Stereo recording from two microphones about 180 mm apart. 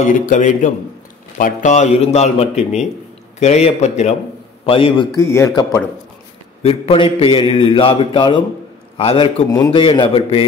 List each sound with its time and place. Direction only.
0.0 s a man's voice: 45° left (ahead or behind); by 5.1 s 30° left (ahead or behind)
5.1 s speech: 15° left (ahead or behind)
6.6 s a man's voice: 30° left (ahead or behind)